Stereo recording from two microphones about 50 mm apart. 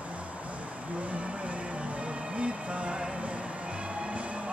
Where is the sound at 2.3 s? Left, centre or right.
Right.